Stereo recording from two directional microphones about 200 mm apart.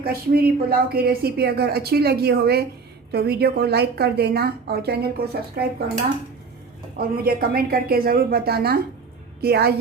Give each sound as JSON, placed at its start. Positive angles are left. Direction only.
{"t": 0.0, "sound": "a woman's voice", "side_deg": -50}
{"t": 6.9, "sound": "a woman's voice", "side_deg": -45}